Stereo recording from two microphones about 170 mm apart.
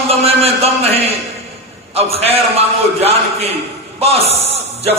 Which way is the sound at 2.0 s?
35° right (ahead or behind).